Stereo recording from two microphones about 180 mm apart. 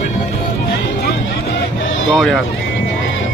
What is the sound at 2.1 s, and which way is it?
Speech, centre (ahead or behind).